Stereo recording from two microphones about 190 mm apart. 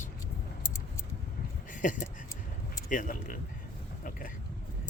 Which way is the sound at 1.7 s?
45° left (ahead or behind).